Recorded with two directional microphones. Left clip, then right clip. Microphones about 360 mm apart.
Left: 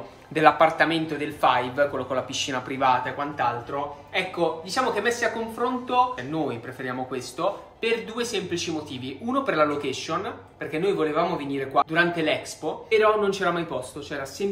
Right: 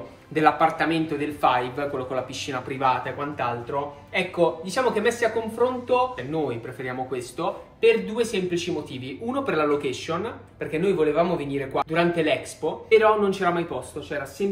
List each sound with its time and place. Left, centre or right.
0.3 s a woman's voice: centre